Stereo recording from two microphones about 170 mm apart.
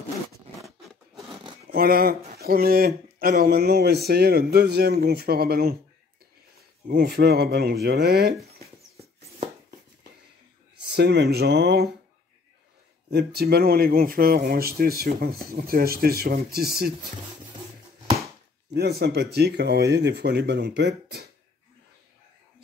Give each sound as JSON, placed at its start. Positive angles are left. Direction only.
{"t": 0.8, "sound": "zipper", "side_deg": 0}
{"t": 1.7, "sound": "speech", "side_deg": -60}
{"t": 6.9, "sound": "speech", "side_deg": -70}
{"t": 10.9, "sound": "speech", "side_deg": -75}
{"t": 13.1, "sound": "speech", "side_deg": -70}
{"t": 18.7, "sound": "speech", "side_deg": -70}